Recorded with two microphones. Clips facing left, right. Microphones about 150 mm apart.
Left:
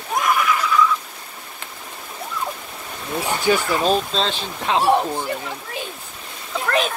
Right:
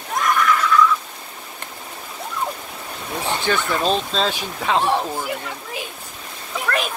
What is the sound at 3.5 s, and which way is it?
Speech, 15° left (ahead or behind).